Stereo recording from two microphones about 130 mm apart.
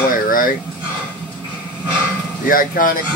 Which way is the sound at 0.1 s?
90° left.